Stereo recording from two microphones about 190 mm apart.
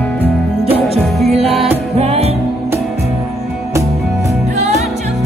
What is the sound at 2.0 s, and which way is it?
Music, 35° right (ahead or behind).